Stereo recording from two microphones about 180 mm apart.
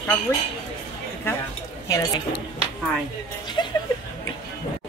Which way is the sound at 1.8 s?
20° left (ahead or behind).